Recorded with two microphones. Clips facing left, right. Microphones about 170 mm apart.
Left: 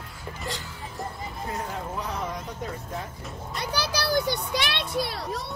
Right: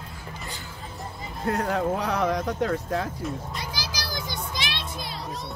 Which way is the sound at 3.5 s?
65° left (ahead or behind).